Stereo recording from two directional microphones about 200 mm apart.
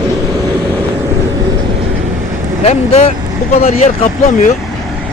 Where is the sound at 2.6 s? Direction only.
30° left (ahead or behind).